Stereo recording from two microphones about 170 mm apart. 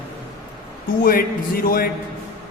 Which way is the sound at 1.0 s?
55° left (ahead or behind).